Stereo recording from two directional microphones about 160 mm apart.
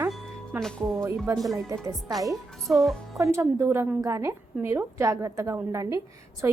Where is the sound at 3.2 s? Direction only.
15° right (ahead or behind).